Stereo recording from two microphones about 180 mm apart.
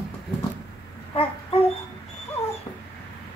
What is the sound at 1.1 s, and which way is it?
Babbling, 30° left (ahead or behind).